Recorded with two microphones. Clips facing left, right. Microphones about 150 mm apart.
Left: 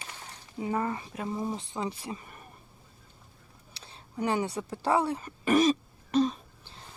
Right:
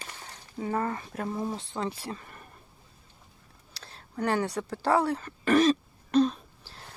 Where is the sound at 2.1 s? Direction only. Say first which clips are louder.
Right 1 dB; 10° left (ahead or behind).